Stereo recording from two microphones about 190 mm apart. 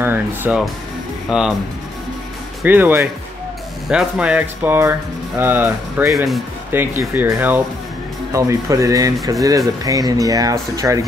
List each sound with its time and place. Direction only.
0.0 s speech: 10° right (ahead or behind)
2.6 s speech: 10° right (ahead or behind)
6.7 s speech: 10° right (ahead or behind)